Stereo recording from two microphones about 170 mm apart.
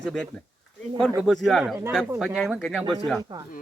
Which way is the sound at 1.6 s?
10° right (ahead or behind).